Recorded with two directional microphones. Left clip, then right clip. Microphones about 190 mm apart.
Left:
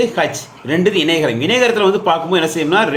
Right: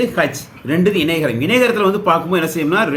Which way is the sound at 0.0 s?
20° right (ahead or behind).